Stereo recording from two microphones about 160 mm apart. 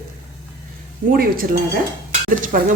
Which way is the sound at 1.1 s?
65° right (ahead or behind).